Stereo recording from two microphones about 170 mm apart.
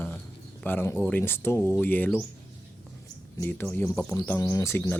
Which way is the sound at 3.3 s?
15° left (ahead or behind).